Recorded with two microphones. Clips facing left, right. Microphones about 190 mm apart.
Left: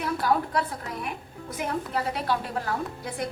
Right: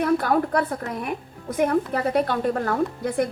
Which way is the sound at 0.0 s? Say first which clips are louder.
Right 5 dB; 55° right (ahead or behind).